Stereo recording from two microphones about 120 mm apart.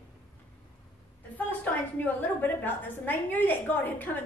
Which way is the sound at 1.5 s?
15° left (ahead or behind).